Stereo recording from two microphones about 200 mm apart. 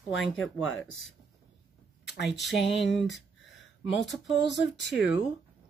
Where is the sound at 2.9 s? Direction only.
65° left (ahead or behind).